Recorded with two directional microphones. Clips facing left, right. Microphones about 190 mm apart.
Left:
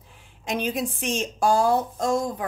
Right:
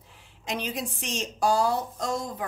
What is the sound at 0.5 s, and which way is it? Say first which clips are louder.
A woman's voice: left 5 dB; 50° left (ahead or behind).